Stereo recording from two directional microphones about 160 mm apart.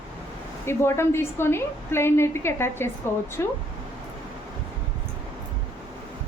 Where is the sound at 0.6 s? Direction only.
15° left (ahead or behind).